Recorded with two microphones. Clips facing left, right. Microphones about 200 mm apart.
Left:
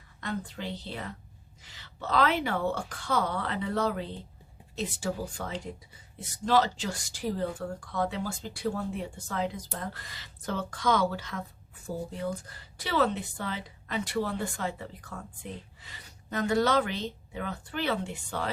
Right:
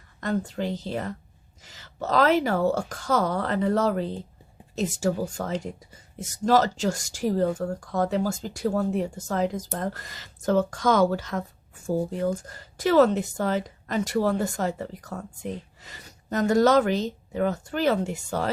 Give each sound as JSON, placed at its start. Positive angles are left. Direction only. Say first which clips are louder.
{"t": 0.2, "sound": "speech", "louder": "right 8 dB", "side_deg": -45}